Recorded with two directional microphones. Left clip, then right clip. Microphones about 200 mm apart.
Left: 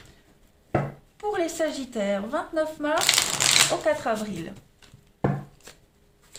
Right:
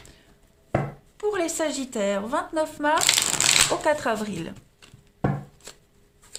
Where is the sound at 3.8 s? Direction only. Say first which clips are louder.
Right 1 dB; 40° right (ahead or behind).